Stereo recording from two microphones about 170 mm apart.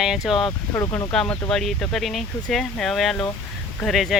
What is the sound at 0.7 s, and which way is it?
Speech, 15° left (ahead or behind).